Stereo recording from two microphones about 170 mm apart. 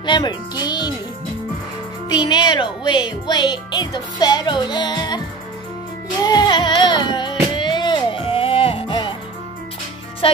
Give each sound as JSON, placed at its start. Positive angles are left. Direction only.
{"t": 0.0, "sound": "speech", "side_deg": 25}
{"t": 2.0, "sound": "speech", "side_deg": 25}
{"t": 6.2, "sound": "speech", "side_deg": 25}
{"t": 7.5, "sound": "music", "side_deg": 25}
{"t": 10.2, "sound": "speech", "side_deg": 35}